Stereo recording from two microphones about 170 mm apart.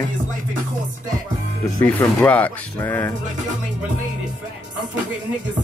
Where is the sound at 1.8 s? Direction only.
10° left (ahead or behind).